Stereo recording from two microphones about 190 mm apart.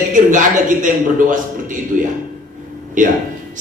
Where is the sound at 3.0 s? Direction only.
45° right (ahead or behind).